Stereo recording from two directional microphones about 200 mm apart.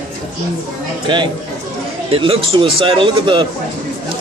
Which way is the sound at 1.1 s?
25° right (ahead or behind).